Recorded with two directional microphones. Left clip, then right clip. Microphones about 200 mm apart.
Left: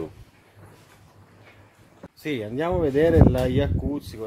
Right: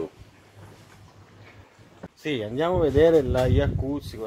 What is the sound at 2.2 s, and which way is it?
Speech, 20° left (ahead or behind).